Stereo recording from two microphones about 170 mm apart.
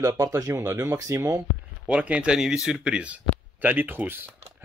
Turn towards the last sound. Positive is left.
turn(degrees=-10)  # may be behind; listen again after turning